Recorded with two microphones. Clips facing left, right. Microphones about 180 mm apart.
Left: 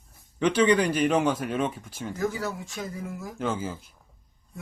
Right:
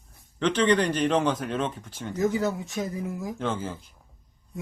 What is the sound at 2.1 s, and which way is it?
Speech, 20° right (ahead or behind).